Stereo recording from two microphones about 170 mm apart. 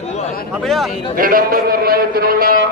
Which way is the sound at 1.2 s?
55° right (ahead or behind).